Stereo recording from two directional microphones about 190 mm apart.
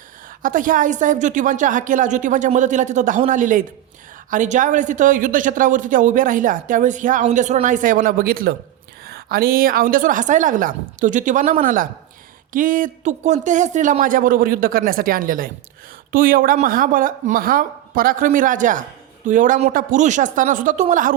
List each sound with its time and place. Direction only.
0.4 s a woman's voice: 45° right (ahead or behind)